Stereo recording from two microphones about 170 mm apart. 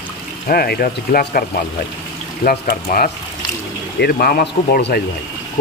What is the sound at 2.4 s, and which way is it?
A man's voice, 60° left (ahead or behind).